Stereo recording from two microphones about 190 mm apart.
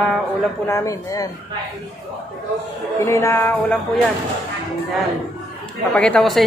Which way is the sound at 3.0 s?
15° left (ahead or behind).